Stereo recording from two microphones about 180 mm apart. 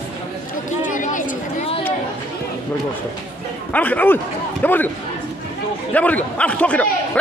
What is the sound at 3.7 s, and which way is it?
A man's voice, 10° left (ahead or behind).